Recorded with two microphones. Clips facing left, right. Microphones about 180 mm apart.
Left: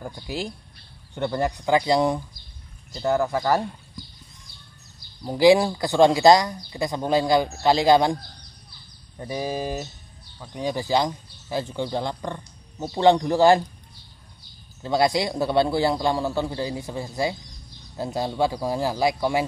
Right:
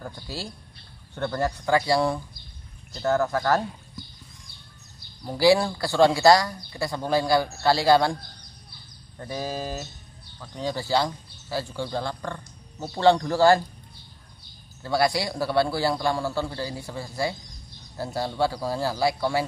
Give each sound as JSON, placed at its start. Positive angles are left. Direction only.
{"t": 0.0, "sound": "speech", "side_deg": 15}
{"t": 5.2, "sound": "speech", "side_deg": 20}
{"t": 9.2, "sound": "speech", "side_deg": 15}
{"t": 14.8, "sound": "speech", "side_deg": 20}